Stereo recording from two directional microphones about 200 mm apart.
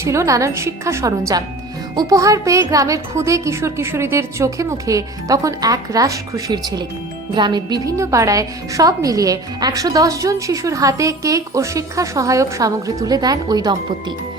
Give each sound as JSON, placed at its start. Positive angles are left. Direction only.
{"t": 0.0, "sound": "a woman's voice", "side_deg": -15}